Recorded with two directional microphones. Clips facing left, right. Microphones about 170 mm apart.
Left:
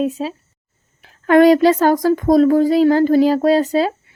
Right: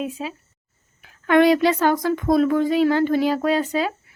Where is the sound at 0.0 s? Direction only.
35° left (ahead or behind).